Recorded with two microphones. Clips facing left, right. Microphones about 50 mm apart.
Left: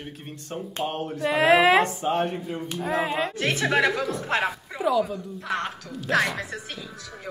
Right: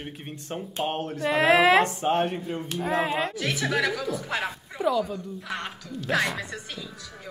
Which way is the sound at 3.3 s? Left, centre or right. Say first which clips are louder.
Left 3 dB; left.